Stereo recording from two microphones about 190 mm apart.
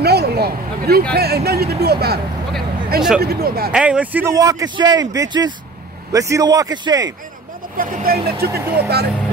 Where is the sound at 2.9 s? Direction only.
5° right (ahead or behind).